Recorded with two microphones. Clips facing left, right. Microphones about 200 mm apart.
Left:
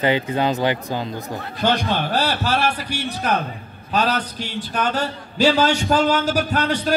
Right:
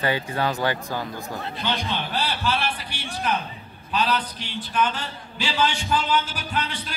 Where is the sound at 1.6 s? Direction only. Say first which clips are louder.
Left 9 dB; 45° left (ahead or behind).